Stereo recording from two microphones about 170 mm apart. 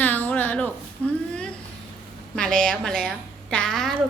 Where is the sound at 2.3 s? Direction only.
5° left (ahead or behind).